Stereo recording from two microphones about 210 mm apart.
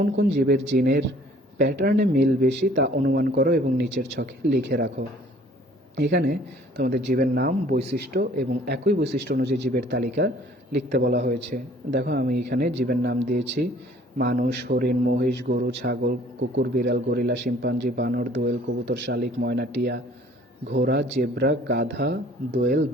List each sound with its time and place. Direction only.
0.3 s speech: 50° right (ahead or behind)